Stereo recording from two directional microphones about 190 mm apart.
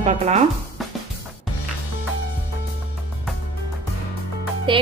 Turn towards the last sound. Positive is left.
turn(degrees=-25)  # may be behind; listen again after turning